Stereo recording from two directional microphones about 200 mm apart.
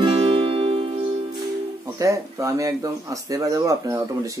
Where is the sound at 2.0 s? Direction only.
15° right (ahead or behind).